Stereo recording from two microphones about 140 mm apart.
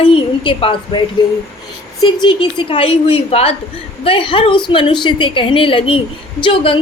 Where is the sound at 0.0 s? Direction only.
40° left (ahead or behind).